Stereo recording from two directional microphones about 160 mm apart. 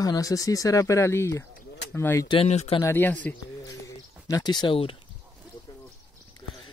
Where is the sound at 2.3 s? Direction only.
40° left (ahead or behind).